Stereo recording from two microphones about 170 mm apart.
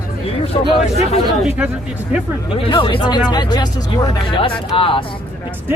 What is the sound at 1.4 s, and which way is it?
Speech, 5° right (ahead or behind).